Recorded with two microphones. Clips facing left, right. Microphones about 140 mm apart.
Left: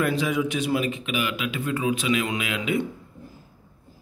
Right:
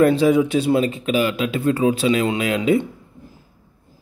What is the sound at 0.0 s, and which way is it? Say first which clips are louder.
Speech: right 9 dB; 30° right (ahead or behind).